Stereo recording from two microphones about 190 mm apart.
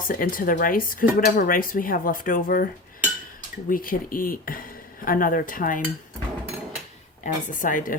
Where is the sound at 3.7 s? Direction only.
45° left (ahead or behind).